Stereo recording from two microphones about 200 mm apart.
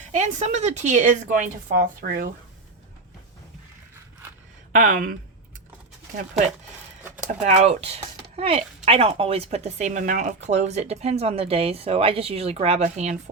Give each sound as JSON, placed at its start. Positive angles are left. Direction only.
{"t": 0.0, "sound": "speech", "side_deg": -40}
{"t": 4.7, "sound": "speech", "side_deg": -40}
{"t": 7.4, "sound": "speech", "side_deg": -35}